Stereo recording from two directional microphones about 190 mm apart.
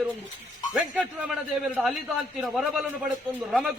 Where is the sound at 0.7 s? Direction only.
5° right (ahead or behind).